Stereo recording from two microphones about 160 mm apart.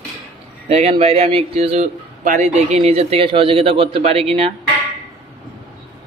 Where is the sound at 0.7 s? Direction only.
40° right (ahead or behind).